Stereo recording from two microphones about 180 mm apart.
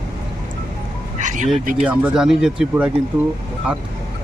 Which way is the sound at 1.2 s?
45° right (ahead or behind).